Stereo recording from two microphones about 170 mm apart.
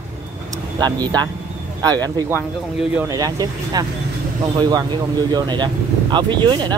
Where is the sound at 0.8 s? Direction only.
25° right (ahead or behind).